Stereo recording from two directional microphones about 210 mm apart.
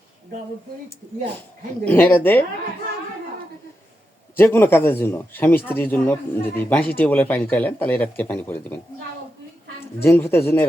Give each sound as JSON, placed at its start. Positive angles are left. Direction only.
{"t": 1.8, "sound": "speech", "side_deg": 10}
{"t": 4.4, "sound": "speech", "side_deg": 10}
{"t": 10.0, "sound": "speech", "side_deg": 10}